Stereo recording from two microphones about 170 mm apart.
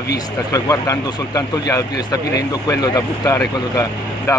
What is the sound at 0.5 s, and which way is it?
Speech, 20° left (ahead or behind).